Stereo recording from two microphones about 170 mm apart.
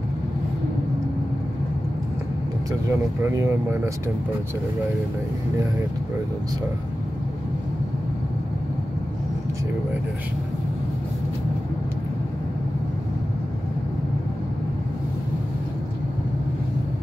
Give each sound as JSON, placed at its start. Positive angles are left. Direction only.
{"t": 2.9, "sound": "speech", "side_deg": -15}